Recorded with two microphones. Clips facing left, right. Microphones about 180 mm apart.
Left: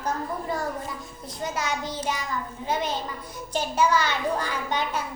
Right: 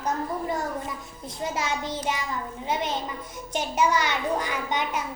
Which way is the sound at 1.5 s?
25° right (ahead or behind).